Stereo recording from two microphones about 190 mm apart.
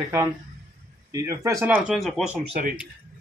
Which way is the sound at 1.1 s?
15° right (ahead or behind).